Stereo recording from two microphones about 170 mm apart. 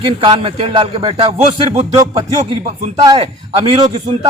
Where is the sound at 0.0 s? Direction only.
30° right (ahead or behind).